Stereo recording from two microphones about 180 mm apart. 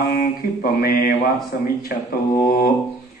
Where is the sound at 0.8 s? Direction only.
55° left (ahead or behind).